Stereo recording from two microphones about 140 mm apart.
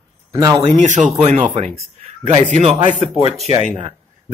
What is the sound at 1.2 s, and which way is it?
Speech, 55° right (ahead or behind).